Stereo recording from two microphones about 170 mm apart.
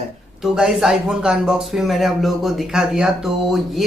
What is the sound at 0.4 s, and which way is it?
A man's voice, centre (ahead or behind).